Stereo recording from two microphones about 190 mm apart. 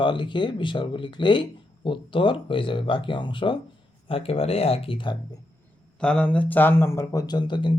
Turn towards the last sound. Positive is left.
turn(degrees=25)  # may be behind; listen again after turning